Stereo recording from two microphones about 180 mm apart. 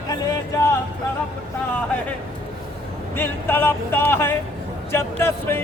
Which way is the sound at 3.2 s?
10° left (ahead or behind).